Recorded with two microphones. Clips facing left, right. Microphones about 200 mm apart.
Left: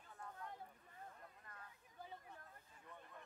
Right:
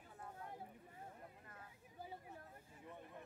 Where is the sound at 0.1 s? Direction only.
30° right (ahead or behind).